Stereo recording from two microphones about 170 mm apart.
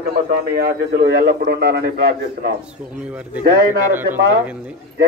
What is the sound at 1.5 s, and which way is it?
A man's voice, 75° right (ahead or behind).